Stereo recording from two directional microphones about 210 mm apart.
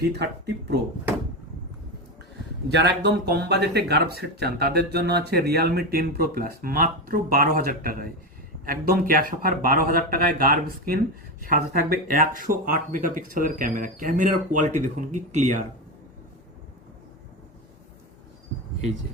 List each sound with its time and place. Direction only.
0.0 s speech: 50° right (ahead or behind)
2.6 s speech: 55° right (ahead or behind); by 15.6 s 35° right (ahead or behind)